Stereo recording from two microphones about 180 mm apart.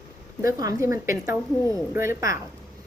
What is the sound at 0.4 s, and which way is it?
A woman's voice, 15° right (ahead or behind).